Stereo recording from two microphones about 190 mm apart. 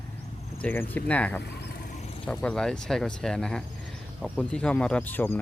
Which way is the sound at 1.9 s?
35° left (ahead or behind).